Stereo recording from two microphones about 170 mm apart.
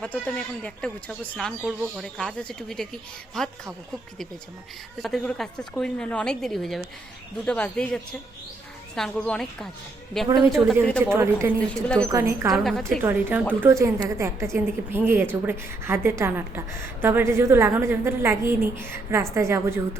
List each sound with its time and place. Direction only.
0.0 s a woman's voice: 10° left (ahead or behind)
5.0 s a woman's voice: 5° left (ahead or behind)
11.0 s a woman's voice: 15° right (ahead or behind)
12.5 s a woman's voice: centre (ahead or behind)
13.0 s a woman's voice: 10° right (ahead or behind)